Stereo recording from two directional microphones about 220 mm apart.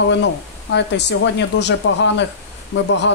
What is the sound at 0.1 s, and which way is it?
Speech, 55° left (ahead or behind).